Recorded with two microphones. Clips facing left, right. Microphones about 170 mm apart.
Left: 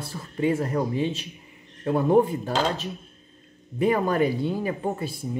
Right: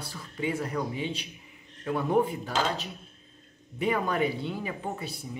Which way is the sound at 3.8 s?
45° left (ahead or behind).